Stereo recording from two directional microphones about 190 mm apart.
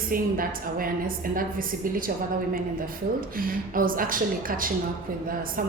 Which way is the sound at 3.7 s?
45° right (ahead or behind).